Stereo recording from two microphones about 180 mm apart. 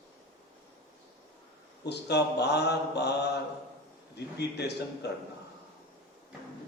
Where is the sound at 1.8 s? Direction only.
70° left (ahead or behind).